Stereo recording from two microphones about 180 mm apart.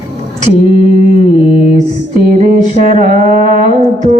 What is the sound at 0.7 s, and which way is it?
Mantra, 45° right (ahead or behind).